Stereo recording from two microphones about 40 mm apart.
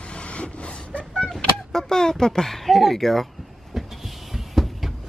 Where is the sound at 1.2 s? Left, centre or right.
Centre.